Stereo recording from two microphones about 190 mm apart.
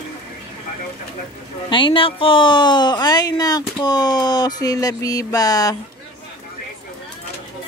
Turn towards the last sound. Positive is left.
turn(degrees=20)  # may be behind; listen again after turning